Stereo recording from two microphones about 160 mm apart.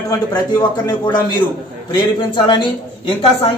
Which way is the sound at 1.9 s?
30° left (ahead or behind).